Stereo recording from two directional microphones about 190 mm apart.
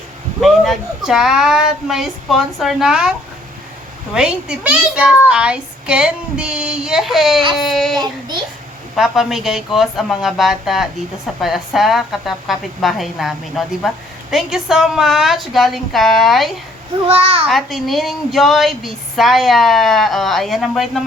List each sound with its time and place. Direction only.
0.4 s a woman's voice: centre (ahead or behind)
4.1 s a woman's voice: 5° right (ahead or behind)
7.9 s child singing: 20° right (ahead or behind)
9.0 s a woman's voice: centre (ahead or behind)
17.1 s child singing: 30° right (ahead or behind)
17.5 s a woman's voice: centre (ahead or behind)